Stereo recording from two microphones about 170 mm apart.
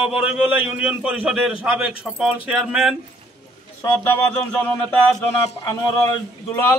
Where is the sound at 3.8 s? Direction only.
15° left (ahead or behind).